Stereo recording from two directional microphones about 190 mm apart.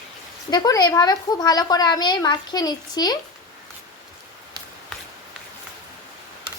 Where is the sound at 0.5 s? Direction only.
20° left (ahead or behind).